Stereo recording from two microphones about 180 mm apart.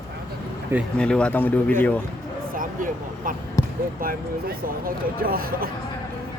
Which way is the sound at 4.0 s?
55° right (ahead or behind).